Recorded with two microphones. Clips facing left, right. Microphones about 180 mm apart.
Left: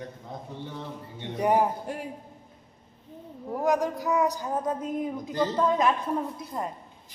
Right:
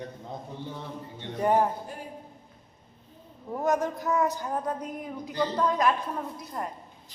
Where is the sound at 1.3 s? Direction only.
15° left (ahead or behind).